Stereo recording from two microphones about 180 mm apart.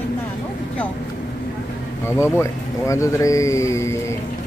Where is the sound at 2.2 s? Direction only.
15° left (ahead or behind).